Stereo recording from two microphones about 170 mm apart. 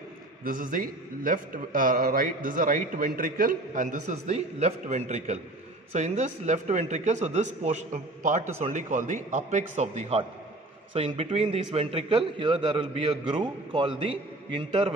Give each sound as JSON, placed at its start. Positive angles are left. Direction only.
{"t": 0.4, "sound": "a man's voice", "side_deg": -55}